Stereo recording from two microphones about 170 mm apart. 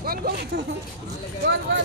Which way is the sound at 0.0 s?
60° right (ahead or behind).